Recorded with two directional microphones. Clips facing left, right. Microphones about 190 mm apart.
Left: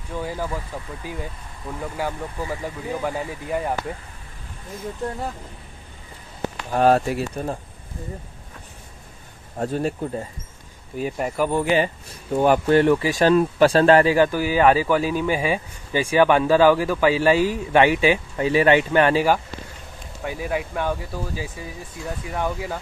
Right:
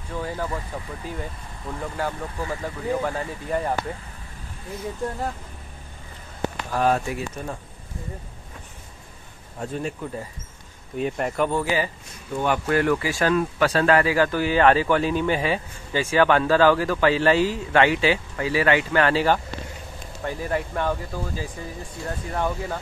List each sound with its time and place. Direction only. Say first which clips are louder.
0.1 s speech: left 1 dB; 10° left (ahead or behind)
1.8 s speech: left 1 dB; 10° left (ahead or behind)
6.7 s speech: left 5 dB; 30° left (ahead or behind)
9.6 s speech: left 5 dB; 40° left (ahead or behind)
11.0 s speech: even; 5° left (ahead or behind)
11.5 s speech: left 4 dB; 25° left (ahead or behind)
14.1 s speech: left 2 dB; 15° left (ahead or behind)